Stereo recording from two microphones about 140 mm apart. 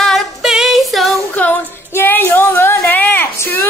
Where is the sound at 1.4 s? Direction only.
15° left (ahead or behind).